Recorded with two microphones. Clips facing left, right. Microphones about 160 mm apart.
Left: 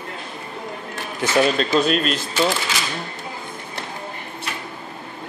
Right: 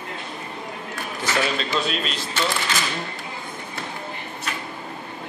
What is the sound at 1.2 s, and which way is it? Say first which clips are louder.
Speech: left 6 dB; 50° left (ahead or behind).